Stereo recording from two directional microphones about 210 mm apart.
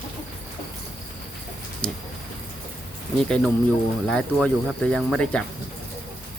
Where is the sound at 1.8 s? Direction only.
5° left (ahead or behind).